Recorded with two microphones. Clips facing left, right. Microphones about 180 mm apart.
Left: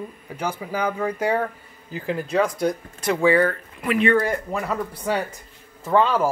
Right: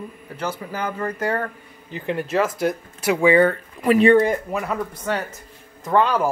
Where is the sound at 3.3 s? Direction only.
25° right (ahead or behind).